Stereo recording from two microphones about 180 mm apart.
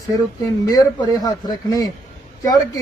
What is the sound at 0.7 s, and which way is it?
A man's voice, 20° left (ahead or behind).